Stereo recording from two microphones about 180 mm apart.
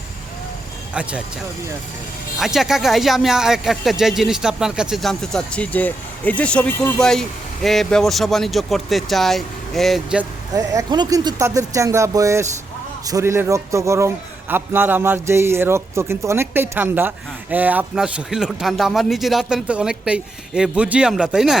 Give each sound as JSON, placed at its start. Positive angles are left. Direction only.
{"t": 0.9, "sound": "a man's voice", "side_deg": -5}
{"t": 2.4, "sound": "speech", "side_deg": 0}
{"t": 10.5, "sound": "a man's voice", "side_deg": -20}